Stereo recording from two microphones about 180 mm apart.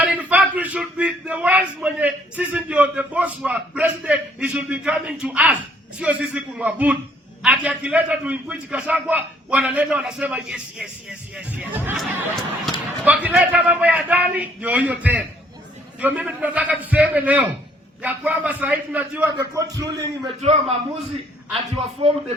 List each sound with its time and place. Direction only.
0.0 s a man's voice: 5° right (ahead or behind)
20.4 s a man's voice: 35° right (ahead or behind)
22.0 s a man's voice: 30° right (ahead or behind)